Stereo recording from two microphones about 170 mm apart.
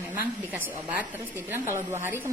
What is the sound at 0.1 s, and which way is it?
A woman's voice, 10° right (ahead or behind).